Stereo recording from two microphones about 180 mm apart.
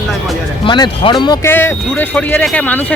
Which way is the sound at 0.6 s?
25° left (ahead or behind).